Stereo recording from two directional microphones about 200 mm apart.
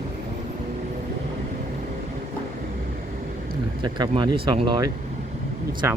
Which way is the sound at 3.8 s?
25° right (ahead or behind).